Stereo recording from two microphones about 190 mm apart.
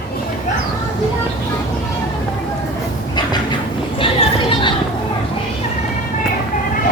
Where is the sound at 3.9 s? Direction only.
30° left (ahead or behind).